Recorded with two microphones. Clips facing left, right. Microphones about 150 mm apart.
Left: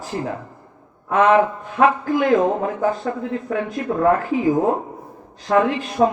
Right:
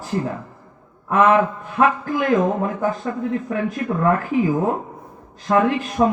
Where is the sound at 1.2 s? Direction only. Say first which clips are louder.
Left 1 dB; 20° left (ahead or behind).